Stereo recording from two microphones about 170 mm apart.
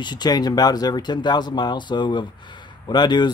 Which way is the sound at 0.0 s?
25° left (ahead or behind).